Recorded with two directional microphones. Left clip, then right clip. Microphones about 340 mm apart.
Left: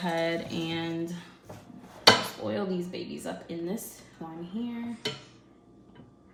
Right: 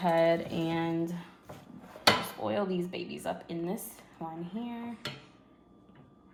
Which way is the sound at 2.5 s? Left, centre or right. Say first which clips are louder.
Right 3 dB; centre.